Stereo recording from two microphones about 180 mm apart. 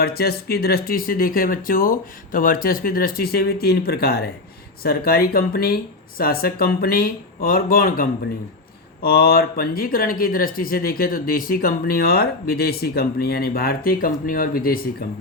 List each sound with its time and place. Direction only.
0.0 s speech: 60° left (ahead or behind)